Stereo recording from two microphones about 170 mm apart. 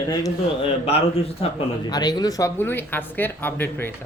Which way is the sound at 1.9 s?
25° left (ahead or behind).